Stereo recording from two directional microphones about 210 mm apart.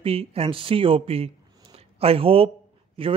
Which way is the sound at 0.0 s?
25° right (ahead or behind).